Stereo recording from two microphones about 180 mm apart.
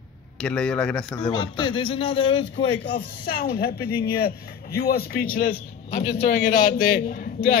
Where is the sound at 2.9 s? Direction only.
55° left (ahead or behind).